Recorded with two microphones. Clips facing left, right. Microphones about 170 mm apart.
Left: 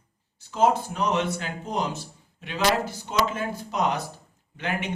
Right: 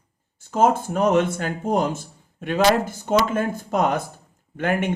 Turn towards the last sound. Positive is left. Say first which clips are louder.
# right 7 dB
turn(degrees=-50)  # may be behind; listen again after turning